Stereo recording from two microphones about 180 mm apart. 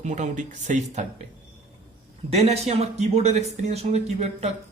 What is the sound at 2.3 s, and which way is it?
Speech, 35° right (ahead or behind).